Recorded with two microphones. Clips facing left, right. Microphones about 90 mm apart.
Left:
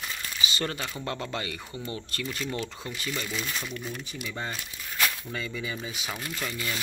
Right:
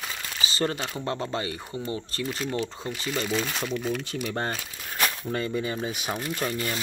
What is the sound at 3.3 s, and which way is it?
Speech, 65° right (ahead or behind).